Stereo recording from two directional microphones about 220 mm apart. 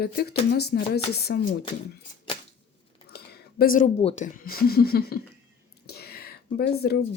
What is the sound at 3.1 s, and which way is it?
Speech, 45° left (ahead or behind).